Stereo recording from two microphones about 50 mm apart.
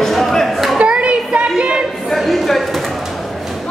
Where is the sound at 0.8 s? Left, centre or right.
Right.